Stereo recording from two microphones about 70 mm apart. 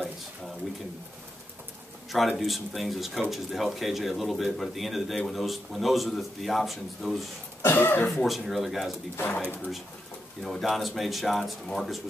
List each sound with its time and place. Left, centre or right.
2.1 s speech: centre
7.6 s speech: left
8.1 s speech: centre
9.1 s speech: left
10.4 s speech: centre